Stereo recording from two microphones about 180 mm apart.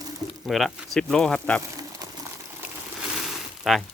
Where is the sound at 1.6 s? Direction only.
20° right (ahead or behind).